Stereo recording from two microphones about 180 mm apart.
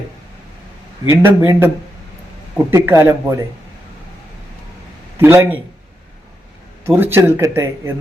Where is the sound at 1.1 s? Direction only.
15° right (ahead or behind).